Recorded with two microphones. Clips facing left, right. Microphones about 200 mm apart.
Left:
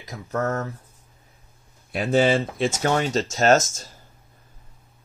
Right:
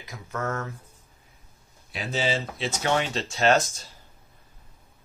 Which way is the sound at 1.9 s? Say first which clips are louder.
Left 9 dB; 55° left (ahead or behind).